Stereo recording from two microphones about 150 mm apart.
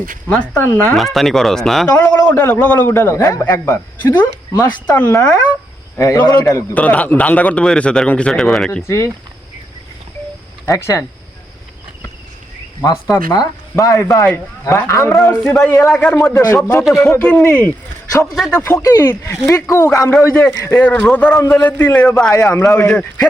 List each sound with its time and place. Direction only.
0.3 s a man's voice: 10° left (ahead or behind)
4.5 s speech: 25° left (ahead or behind)
4.9 s a man's voice: 10° left (ahead or behind)
6.0 s speech: 20° left (ahead or behind)
6.7 s a man's voice: 10° left (ahead or behind)
8.8 s speech: 20° left (ahead or behind)
10.7 s speech: 20° left (ahead or behind)
13.1 s a man's voice: 25° left (ahead or behind)
15.9 s speech: 5° left (ahead or behind)
16.1 s speech: 20° left (ahead or behind)
16.6 s a man's voice: 5° left (ahead or behind)
18.6 s a man's voice: 20° left (ahead or behind)
22.3 s speech: 20° left (ahead or behind)
22.9 s a man's voice: 5° left (ahead or behind)